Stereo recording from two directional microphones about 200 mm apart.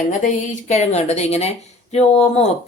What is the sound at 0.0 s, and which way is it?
Speech, 40° left (ahead or behind).